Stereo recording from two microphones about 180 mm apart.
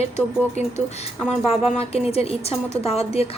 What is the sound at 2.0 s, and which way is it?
Speech, 35° left (ahead or behind).